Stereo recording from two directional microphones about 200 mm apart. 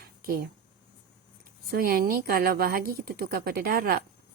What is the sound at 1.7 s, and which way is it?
Speech, 50° right (ahead or behind).